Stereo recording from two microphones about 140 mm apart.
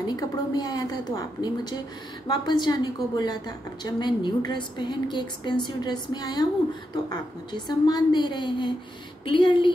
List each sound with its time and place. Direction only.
0.0 s a woman's voice: 30° left (ahead or behind)